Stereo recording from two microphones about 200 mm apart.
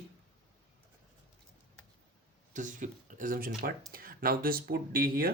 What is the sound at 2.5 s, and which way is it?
Speech, 40° right (ahead or behind).